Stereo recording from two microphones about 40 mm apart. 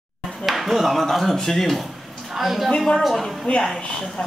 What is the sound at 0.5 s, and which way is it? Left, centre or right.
A man's voice, centre.